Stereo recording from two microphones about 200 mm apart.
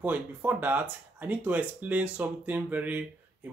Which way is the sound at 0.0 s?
10° right (ahead or behind).